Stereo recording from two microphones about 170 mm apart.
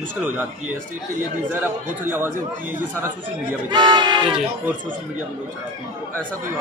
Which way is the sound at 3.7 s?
25° right (ahead or behind).